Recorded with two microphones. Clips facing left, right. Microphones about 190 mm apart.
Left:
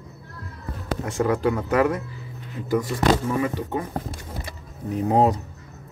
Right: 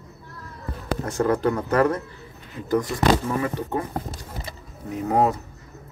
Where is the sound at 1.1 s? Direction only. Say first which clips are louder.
Even; 10° left (ahead or behind).